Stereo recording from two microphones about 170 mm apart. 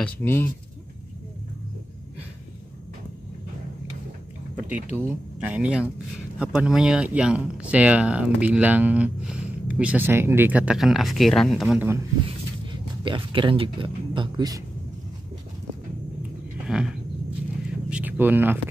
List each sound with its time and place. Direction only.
0.0 s speech: 15° left (ahead or behind)
4.9 s speech: 10° right (ahead or behind)
11.7 s speech: 10° right (ahead or behind)
13.0 s speech: 30° right (ahead or behind)
16.6 s a sound: 5° right (ahead or behind)